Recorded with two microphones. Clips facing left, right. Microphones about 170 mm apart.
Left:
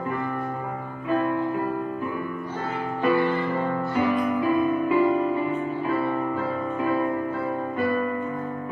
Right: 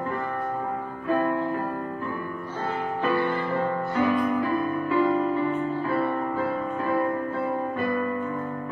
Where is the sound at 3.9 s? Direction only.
15° left (ahead or behind).